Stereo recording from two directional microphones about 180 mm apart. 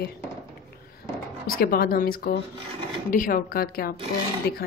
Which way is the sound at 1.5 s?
55° left (ahead or behind).